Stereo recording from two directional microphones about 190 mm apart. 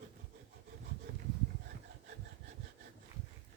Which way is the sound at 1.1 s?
50° right (ahead or behind).